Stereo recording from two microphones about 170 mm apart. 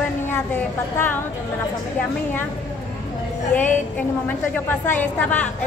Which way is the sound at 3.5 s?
10° left (ahead or behind).